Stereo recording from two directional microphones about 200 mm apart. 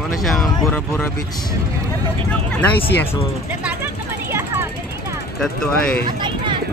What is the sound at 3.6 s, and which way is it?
Vehicle, 10° right (ahead or behind).